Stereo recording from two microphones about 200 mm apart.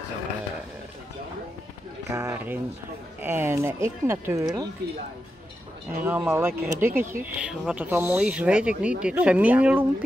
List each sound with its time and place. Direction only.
2.0 s speech: 15° right (ahead or behind)
5.9 s speech: 10° right (ahead or behind)